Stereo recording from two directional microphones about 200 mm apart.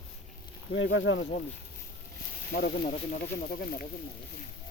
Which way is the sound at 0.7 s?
65° left (ahead or behind).